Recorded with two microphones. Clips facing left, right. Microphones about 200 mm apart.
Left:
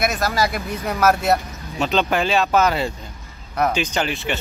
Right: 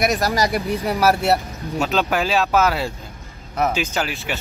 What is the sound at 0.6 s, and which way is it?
Speech, 30° right (ahead or behind).